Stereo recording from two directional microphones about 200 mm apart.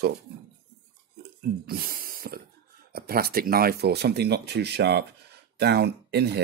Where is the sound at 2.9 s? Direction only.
50° right (ahead or behind).